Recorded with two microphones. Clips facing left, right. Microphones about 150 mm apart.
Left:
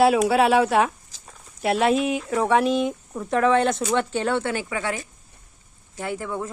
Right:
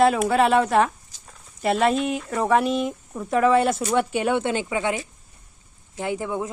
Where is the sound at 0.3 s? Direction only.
5° left (ahead or behind).